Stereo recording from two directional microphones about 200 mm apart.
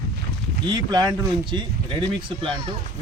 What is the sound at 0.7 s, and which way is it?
Speech, 20° right (ahead or behind).